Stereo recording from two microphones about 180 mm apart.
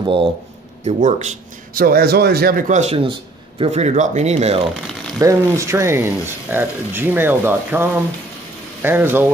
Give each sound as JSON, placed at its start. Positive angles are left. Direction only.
{"t": 0.0, "sound": "speech", "side_deg": -30}
{"t": 0.8, "sound": "a man's voice", "side_deg": -45}
{"t": 5.2, "sound": "speech", "side_deg": -15}